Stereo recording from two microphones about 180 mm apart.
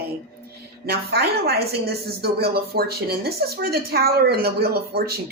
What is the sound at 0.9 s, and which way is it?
A woman's voice, 60° right (ahead or behind).